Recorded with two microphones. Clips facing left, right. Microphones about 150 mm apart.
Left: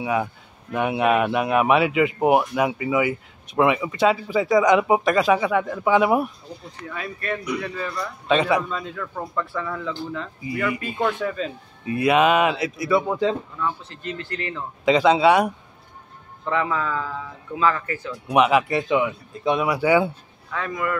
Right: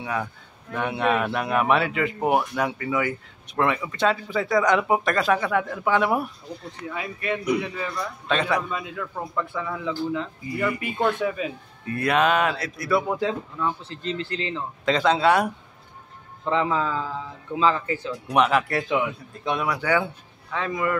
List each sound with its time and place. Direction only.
0.0 s a man's voice: 10° left (ahead or behind)
6.9 s speech: 15° right (ahead or behind)
8.3 s speech: centre (ahead or behind)
8.6 s speech: 10° right (ahead or behind)
10.5 s speech: 5° left (ahead or behind)
11.2 s speech: 10° right (ahead or behind)
11.8 s speech: 5° left (ahead or behind)
13.8 s a man's voice: 25° right (ahead or behind)
14.9 s speech: 5° left (ahead or behind)
16.4 s a man's voice: 20° right (ahead or behind)
18.3 s speech: 5° left (ahead or behind)
20.5 s a man's voice: 25° right (ahead or behind)